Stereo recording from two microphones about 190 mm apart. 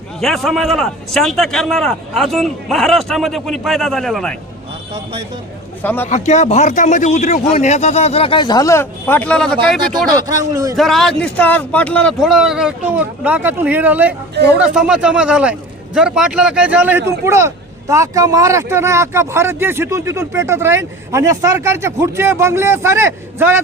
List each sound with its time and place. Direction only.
0.2 s a man's voice: centre (ahead or behind)
5.8 s a man's voice: 10° left (ahead or behind)
6.1 s speech: 40° left (ahead or behind); by 9.7 s 5° left (ahead or behind)
10.2 s a man's voice: 20° right (ahead or behind)
10.8 s a man's voice: centre (ahead or behind)